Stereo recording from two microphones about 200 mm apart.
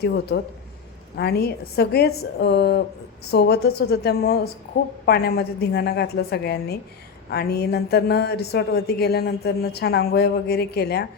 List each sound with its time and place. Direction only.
0.0 s a woman's voice: 55° left (ahead or behind)